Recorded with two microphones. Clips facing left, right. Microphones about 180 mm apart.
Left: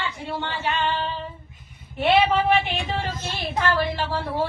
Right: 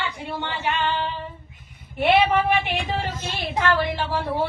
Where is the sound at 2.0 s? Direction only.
15° right (ahead or behind).